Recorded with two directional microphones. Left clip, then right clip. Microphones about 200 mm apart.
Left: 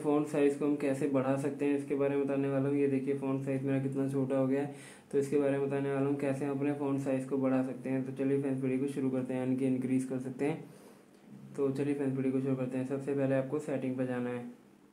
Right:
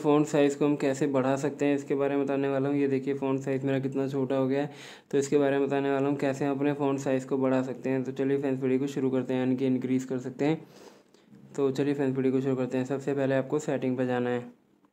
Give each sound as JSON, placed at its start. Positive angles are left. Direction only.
{"t": 0.0, "sound": "speech", "side_deg": -40}
{"t": 11.5, "sound": "speech", "side_deg": -40}